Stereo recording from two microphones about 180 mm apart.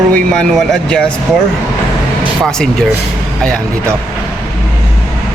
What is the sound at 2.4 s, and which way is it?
Speech, 5° left (ahead or behind).